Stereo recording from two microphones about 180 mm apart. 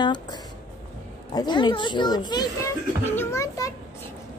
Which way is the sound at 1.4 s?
25° left (ahead or behind).